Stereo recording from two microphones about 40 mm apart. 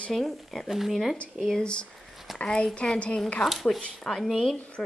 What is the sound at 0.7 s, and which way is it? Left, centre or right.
Speech, centre.